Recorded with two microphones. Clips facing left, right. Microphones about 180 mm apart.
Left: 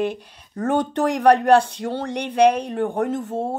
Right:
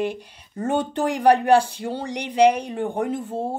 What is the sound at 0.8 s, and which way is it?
Speech, 75° left (ahead or behind).